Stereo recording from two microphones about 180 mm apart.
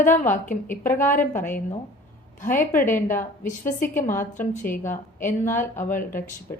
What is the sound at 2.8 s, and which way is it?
Speech, 15° left (ahead or behind).